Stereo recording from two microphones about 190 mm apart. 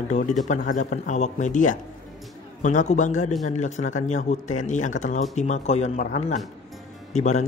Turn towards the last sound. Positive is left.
turn(degrees=35)  # may be behind; listen again after turning